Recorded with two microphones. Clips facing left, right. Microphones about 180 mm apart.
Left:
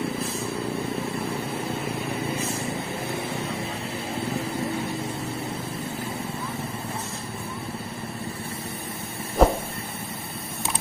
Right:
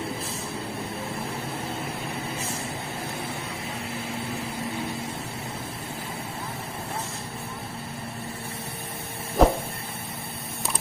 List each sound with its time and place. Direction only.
9.4 s vehicle: centre (ahead or behind)